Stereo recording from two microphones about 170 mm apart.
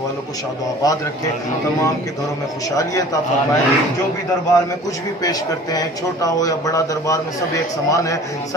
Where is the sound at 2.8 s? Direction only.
20° left (ahead or behind).